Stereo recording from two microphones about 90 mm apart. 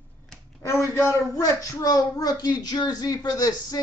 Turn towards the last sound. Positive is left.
turn(degrees=45)  # may be behind; listen again after turning